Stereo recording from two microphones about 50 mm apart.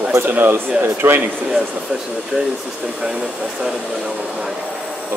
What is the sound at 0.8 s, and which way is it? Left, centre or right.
Speech, right.